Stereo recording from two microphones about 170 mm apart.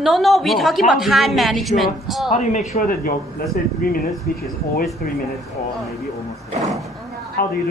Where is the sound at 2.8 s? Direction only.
60° left (ahead or behind).